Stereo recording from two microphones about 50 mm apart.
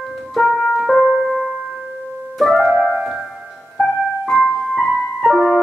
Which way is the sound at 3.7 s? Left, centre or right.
Centre.